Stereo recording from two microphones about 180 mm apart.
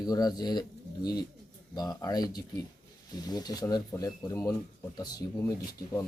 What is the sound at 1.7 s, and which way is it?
Speech, 20° left (ahead or behind).